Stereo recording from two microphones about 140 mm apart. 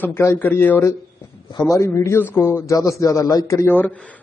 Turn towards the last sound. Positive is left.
turn(degrees=15)  # may be behind; listen again after turning